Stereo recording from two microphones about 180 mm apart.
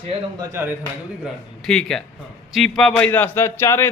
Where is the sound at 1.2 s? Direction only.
Centre (ahead or behind).